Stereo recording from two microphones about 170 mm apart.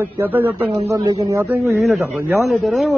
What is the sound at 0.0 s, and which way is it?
A man's voice, 10° right (ahead or behind).